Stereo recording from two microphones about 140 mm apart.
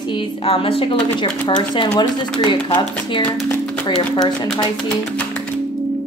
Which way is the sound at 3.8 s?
35° left (ahead or behind).